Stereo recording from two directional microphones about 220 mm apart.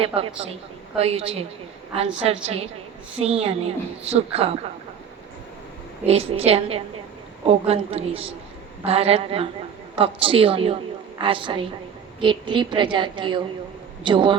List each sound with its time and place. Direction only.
0.0 s a woman's voice: 25° right (ahead or behind)
6.1 s a woman's voice: 25° right (ahead or behind)